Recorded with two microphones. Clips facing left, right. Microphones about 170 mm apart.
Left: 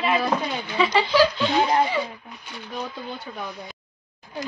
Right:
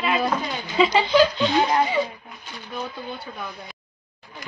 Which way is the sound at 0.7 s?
20° right (ahead or behind).